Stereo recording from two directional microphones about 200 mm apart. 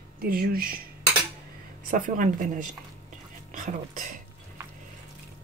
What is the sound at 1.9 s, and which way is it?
Speech, 40° right (ahead or behind).